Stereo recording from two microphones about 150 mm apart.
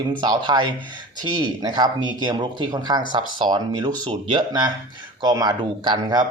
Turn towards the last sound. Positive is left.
turn(degrees=-30)  # may be behind; listen again after turning